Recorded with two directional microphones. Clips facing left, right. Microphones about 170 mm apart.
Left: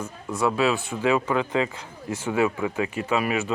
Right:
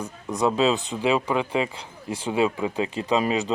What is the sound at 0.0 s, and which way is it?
Speech, 20° right (ahead or behind).